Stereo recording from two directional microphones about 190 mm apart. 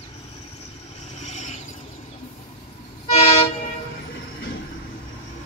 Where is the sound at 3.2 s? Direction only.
30° left (ahead or behind).